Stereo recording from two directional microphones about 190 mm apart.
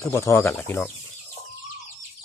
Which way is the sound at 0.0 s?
15° left (ahead or behind).